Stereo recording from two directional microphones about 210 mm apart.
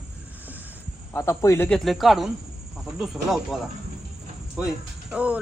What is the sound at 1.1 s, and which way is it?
Speech, 15° left (ahead or behind).